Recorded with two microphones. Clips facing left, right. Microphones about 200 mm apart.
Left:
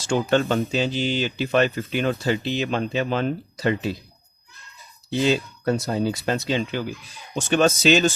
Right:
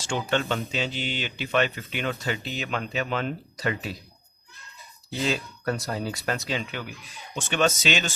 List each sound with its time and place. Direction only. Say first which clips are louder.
0.1 s speech: left 6 dB; 40° left (ahead or behind)
5.1 s speech: left 7 dB; 25° left (ahead or behind)